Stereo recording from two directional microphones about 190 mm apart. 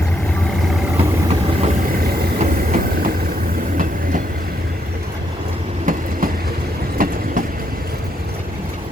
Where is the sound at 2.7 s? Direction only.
50° right (ahead or behind).